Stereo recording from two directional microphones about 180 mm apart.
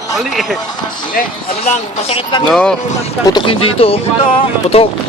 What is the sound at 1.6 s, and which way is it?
Speech, 35° left (ahead or behind).